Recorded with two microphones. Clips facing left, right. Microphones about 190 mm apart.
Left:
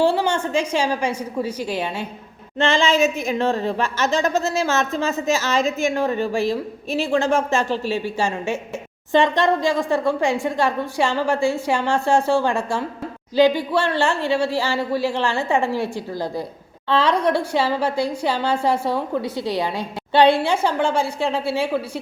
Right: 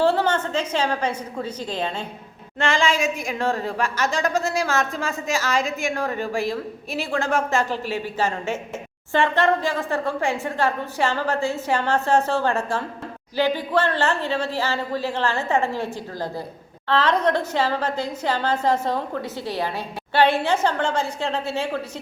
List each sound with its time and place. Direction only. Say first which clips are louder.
0.0 s a woman's voice: left 1 dB; 10° left (ahead or behind)
2.6 s a woman's voice: left 4 dB; 20° left (ahead or behind)